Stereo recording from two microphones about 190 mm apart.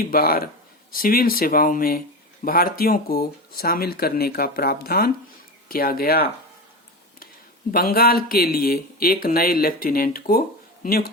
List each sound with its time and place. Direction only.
0.0 s speech: 50° left (ahead or behind)
7.7 s speech: 50° left (ahead or behind)